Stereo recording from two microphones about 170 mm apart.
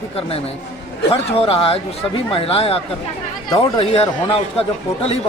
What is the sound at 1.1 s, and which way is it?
Speech, 35° left (ahead or behind).